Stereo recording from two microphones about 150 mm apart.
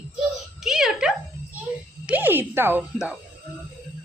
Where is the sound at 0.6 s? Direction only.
5° right (ahead or behind).